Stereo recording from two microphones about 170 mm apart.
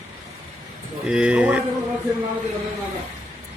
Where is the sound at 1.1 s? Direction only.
5° right (ahead or behind).